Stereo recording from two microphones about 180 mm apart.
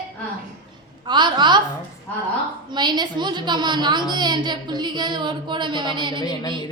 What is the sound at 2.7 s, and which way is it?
A woman's voice, 25° right (ahead or behind).